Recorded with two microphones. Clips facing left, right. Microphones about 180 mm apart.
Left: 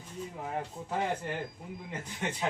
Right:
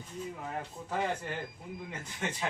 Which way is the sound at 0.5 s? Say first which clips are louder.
Left 2 dB; 20° left (ahead or behind).